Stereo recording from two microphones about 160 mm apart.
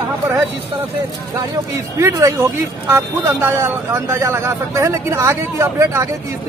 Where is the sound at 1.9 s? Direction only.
15° right (ahead or behind).